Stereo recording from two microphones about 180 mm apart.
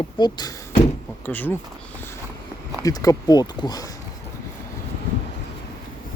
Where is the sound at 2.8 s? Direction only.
20° left (ahead or behind).